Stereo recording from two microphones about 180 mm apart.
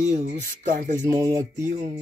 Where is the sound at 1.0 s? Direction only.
15° right (ahead or behind).